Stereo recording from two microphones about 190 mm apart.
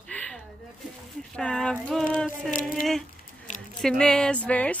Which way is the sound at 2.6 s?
45° left (ahead or behind).